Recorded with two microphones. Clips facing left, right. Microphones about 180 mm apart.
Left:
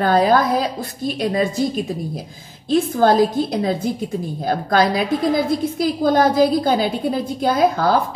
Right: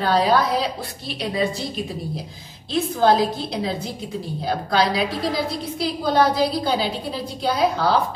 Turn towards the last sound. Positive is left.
turn(degrees=50)  # may be behind; listen again after turning